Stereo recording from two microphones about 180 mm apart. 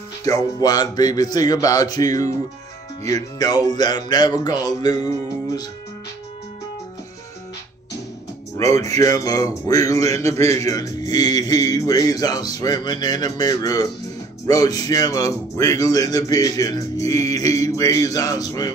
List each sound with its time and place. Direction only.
0.2 s speech: 20° left (ahead or behind)
8.5 s speech: 15° left (ahead or behind)